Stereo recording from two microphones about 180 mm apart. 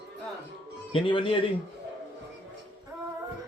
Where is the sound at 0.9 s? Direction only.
25° left (ahead or behind).